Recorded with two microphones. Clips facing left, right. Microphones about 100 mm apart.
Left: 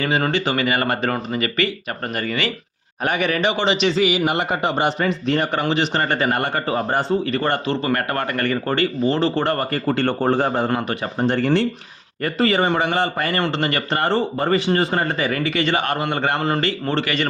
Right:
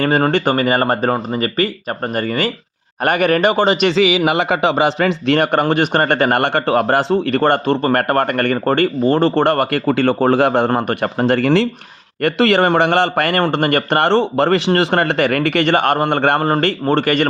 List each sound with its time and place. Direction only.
0.0 s a man's voice: 50° right (ahead or behind)
3.0 s a man's voice: 55° right (ahead or behind)
3.9 s a man's voice: 90° right; by 9.8 s 65° right (ahead or behind)
10.2 s speech: 90° right
10.8 s speech: 60° right (ahead or behind); by 11.7 s 90° right
12.2 s a man's voice: 75° right (ahead or behind)
13.4 s a man's voice: 55° right (ahead or behind)